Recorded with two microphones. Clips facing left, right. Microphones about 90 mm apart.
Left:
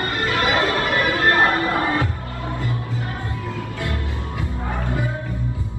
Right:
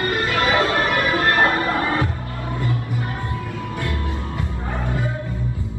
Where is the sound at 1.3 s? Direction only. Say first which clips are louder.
Left 2 dB; 20° left (ahead or behind).